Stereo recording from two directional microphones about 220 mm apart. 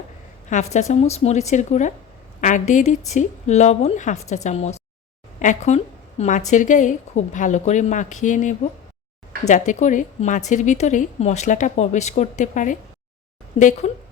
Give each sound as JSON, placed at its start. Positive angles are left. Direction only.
{"t": 0.5, "sound": "a woman's voice", "side_deg": 30}